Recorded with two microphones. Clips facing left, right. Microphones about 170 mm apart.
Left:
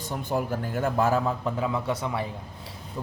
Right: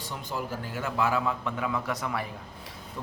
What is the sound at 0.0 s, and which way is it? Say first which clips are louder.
A man's voice: left 6 dB; 50° left (ahead or behind).